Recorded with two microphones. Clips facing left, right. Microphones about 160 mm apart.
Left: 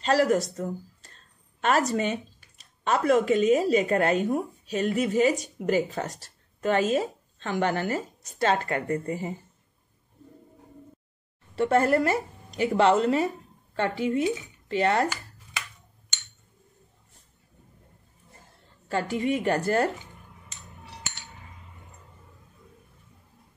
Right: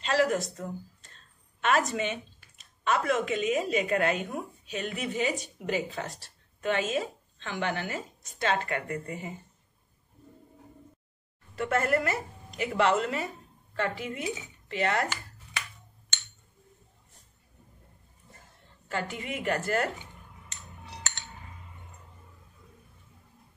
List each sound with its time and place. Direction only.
0.0 s speech: 40° left (ahead or behind)
11.5 s speech: 30° left (ahead or behind)
18.9 s speech: 35° left (ahead or behind)